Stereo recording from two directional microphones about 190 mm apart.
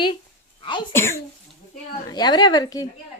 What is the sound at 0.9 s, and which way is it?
A child's voice, 15° left (ahead or behind).